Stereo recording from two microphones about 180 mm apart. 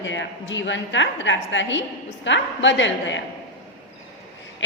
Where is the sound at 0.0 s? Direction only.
90° left.